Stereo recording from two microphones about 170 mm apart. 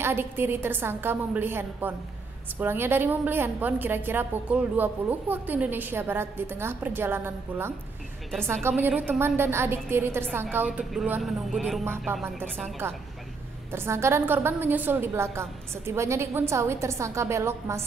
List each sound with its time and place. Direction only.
0.0 s a woman's voice: 15° right (ahead or behind)
13.7 s a woman's voice: 15° right (ahead or behind)